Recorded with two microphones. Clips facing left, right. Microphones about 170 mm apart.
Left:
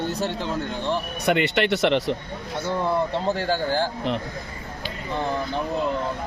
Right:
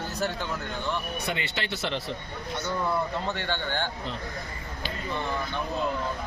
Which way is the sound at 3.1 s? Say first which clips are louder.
Left 7 dB; 35° left (ahead or behind).